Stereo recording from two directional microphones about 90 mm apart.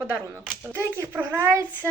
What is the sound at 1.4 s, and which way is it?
Speech, 30° right (ahead or behind).